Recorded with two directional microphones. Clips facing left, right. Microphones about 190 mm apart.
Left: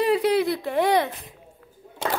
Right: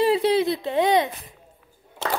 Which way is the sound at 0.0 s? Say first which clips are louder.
Right 1 dB; 25° right (ahead or behind).